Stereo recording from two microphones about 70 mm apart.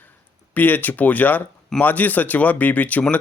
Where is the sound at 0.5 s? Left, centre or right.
Left.